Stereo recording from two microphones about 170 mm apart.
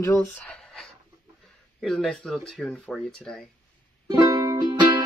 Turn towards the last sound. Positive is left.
turn(degrees=-20)  # may be behind; listen again after turning